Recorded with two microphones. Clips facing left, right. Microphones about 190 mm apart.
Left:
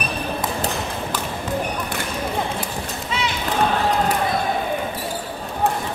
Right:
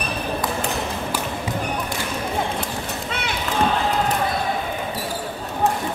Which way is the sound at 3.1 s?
55° right (ahead or behind).